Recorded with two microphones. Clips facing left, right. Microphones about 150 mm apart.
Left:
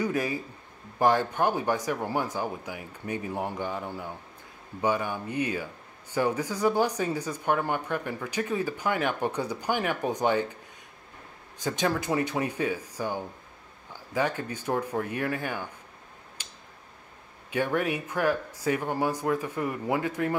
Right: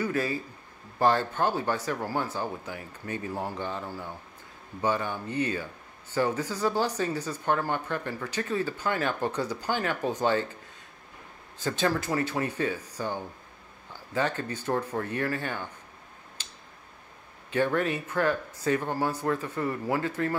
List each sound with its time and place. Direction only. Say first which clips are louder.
0.0 s speech: left 1 dB; 15° left (ahead or behind)
11.6 s speech: even; 15° left (ahead or behind)
16.4 s a sound: even; 10° left (ahead or behind)
17.5 s speech: right 1 dB; 10° left (ahead or behind)